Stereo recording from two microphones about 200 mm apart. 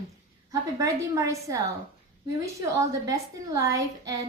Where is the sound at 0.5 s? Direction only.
15° right (ahead or behind).